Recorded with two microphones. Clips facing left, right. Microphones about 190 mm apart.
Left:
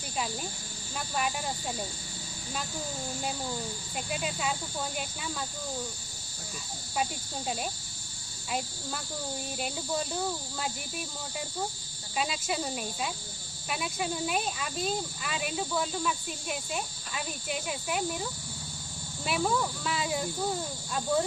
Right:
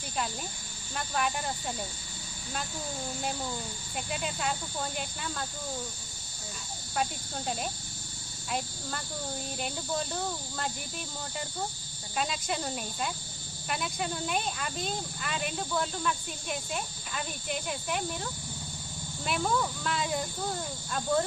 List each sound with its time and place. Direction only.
0.9 s speech: centre (ahead or behind)
4.1 s speech: centre (ahead or behind)
6.9 s speech: centre (ahead or behind)
12.1 s speech: 5° left (ahead or behind)